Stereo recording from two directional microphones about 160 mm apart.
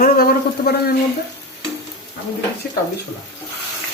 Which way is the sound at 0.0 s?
65° left (ahead or behind).